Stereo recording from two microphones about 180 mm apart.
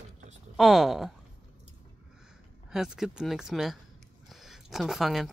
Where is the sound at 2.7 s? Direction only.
Centre (ahead or behind).